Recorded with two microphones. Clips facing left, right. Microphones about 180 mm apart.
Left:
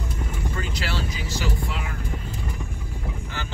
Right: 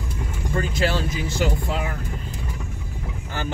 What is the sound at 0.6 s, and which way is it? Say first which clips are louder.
Vehicle: right 9 dB; 50° right (ahead or behind).